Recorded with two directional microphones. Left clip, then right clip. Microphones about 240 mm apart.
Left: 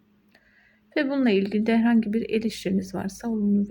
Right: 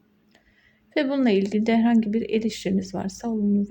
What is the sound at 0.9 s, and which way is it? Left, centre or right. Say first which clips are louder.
Speech: right 1 dB; centre.